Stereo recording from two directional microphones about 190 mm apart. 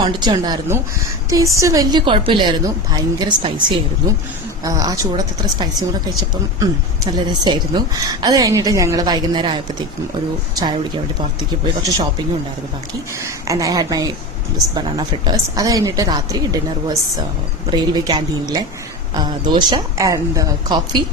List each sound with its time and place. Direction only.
0.0 s a woman's voice: 20° right (ahead or behind)
4.6 s a woman's voice: 20° right (ahead or behind)
13.2 s a woman's voice: 15° right (ahead or behind)